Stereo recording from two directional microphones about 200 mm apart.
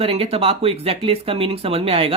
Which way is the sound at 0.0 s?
30° right (ahead or behind).